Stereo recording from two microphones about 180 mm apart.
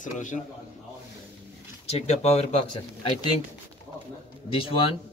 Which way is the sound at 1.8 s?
35° left (ahead or behind).